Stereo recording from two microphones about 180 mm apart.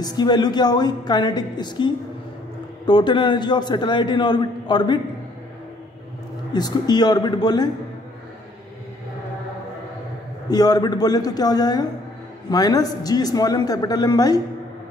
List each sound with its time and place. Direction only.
0.0 s a man's voice: 20° left (ahead or behind)
2.9 s a man's voice: 25° left (ahead or behind)
6.5 s a man's voice: 25° left (ahead or behind)
10.5 s a man's voice: 20° left (ahead or behind)